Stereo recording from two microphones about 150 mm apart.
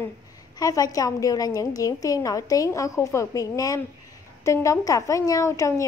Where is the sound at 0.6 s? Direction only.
25° left (ahead or behind).